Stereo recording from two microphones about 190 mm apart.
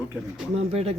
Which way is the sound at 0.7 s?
35° right (ahead or behind).